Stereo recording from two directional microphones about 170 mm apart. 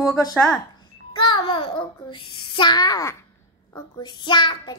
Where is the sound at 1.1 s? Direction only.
30° left (ahead or behind).